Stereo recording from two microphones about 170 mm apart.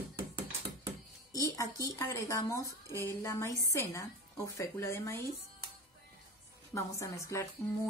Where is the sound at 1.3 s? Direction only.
20° left (ahead or behind).